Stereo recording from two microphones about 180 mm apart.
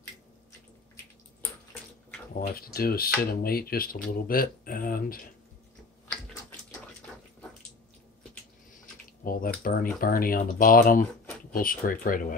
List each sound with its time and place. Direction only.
1.7 s bathtub: 10° left (ahead or behind)
2.4 s speech: 55° left (ahead or behind)
9.2 s speech: 55° left (ahead or behind)